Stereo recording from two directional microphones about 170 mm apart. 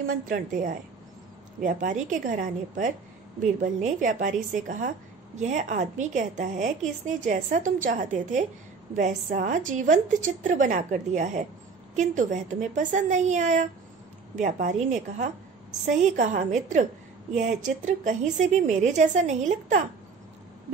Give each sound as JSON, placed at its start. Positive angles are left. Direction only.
{"t": 0.0, "sound": "a woman's voice", "side_deg": -55}